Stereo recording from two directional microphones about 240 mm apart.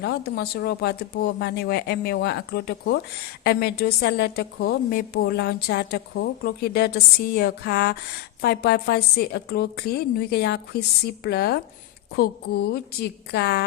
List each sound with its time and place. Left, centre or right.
0.0 s a woman's voice: left